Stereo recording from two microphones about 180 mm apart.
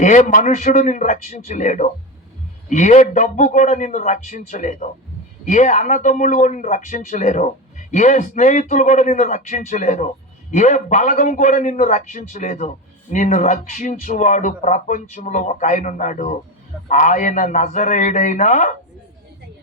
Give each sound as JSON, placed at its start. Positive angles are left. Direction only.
{"t": 0.0, "sound": "a man's voice", "side_deg": 45}